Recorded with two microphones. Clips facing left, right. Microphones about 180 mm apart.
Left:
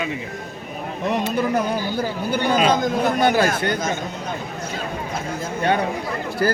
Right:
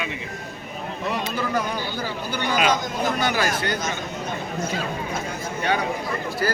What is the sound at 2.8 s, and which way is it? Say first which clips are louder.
Speech: left 6 dB; 55° left (ahead or behind).